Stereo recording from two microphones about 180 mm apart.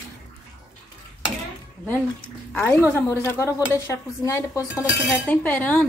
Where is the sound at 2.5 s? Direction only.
10° left (ahead or behind).